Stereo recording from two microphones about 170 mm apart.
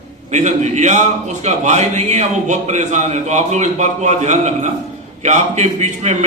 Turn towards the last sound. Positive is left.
turn(degrees=-45)  # may be behind; listen again after turning